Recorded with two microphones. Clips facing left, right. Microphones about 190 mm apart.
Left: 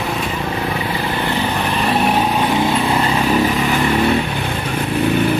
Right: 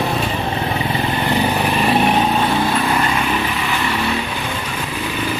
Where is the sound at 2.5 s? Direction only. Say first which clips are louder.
Left 1 dB; 20° left (ahead or behind).